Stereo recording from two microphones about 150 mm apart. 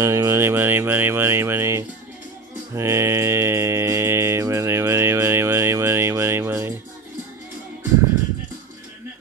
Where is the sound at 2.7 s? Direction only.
20° right (ahead or behind).